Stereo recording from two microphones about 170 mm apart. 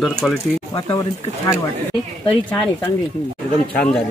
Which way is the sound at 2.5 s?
10° left (ahead or behind).